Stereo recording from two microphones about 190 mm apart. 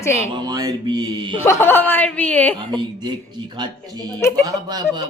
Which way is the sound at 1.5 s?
10° left (ahead or behind).